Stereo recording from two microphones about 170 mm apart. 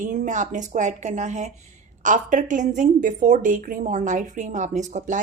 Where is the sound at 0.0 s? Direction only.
50° right (ahead or behind).